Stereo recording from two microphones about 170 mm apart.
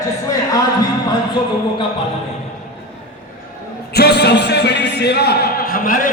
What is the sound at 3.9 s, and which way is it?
Speech, 75° left (ahead or behind).